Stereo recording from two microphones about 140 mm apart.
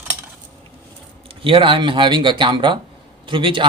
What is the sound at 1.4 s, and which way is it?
Speech, 40° right (ahead or behind).